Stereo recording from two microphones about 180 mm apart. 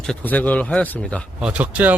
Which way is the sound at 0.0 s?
5° left (ahead or behind).